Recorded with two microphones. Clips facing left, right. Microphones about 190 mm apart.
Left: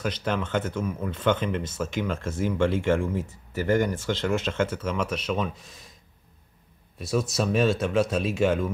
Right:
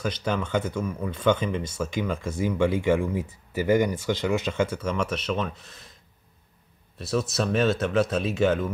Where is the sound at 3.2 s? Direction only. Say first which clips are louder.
Right 1 dB; 15° right (ahead or behind).